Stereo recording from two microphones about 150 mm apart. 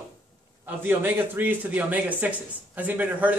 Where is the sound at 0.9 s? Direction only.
15° right (ahead or behind).